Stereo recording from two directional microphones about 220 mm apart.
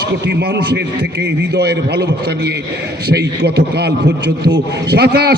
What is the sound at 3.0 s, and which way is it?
A man's voice, 45° right (ahead or behind).